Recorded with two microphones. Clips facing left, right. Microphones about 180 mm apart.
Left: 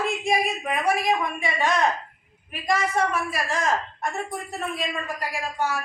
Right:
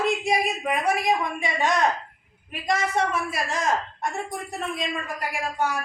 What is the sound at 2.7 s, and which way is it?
Speech, 20° right (ahead or behind).